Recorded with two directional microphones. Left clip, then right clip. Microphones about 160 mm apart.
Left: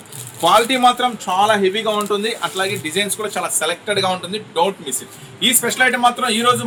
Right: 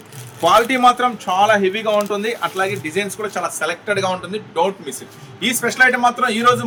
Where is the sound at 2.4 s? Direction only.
Centre (ahead or behind).